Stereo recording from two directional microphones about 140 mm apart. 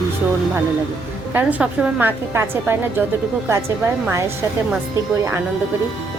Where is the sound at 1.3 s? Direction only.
10° right (ahead or behind).